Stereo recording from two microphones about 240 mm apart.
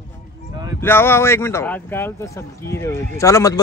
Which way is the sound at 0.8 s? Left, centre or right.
Centre.